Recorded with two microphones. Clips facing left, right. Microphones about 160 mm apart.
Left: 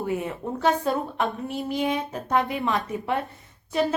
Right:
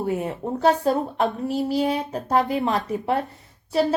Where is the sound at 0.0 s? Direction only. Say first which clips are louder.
Right 3 dB; 40° right (ahead or behind).